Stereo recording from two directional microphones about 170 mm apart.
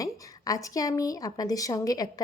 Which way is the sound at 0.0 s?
20° left (ahead or behind).